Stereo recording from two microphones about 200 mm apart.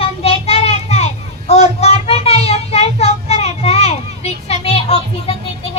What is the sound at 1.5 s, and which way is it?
Child singing, 30° left (ahead or behind).